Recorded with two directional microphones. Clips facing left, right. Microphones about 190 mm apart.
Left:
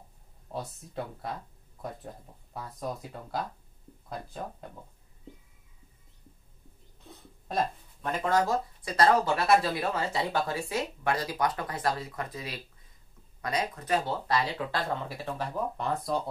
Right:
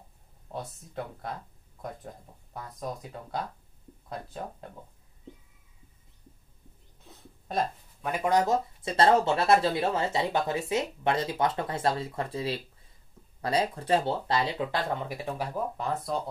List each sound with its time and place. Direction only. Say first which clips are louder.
0.5 s speech: left 1 dB; centre (ahead or behind)
2.5 s speech: left 1 dB; 5° left (ahead or behind)
7.4 s a sound: even; centre (ahead or behind)
8.1 s speech: right 2 dB; 15° right (ahead or behind)
15.0 s speech: right 1 dB; 15° right (ahead or behind)